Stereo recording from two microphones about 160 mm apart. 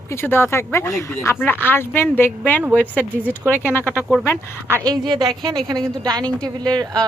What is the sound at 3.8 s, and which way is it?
Speech, 15° right (ahead or behind).